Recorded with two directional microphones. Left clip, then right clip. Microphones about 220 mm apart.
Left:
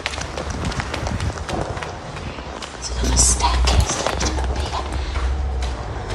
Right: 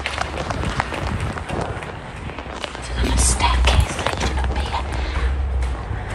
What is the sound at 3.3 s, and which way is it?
Whispering, 20° left (ahead or behind).